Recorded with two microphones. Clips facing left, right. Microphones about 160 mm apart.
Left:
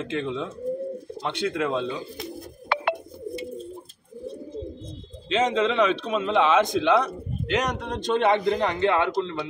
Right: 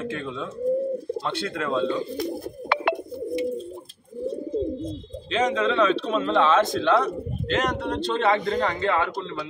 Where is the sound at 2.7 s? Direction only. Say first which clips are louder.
Right 2 dB; 75° right (ahead or behind).